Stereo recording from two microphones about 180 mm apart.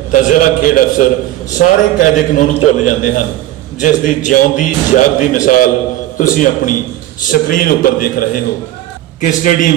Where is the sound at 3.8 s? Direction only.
45° left (ahead or behind).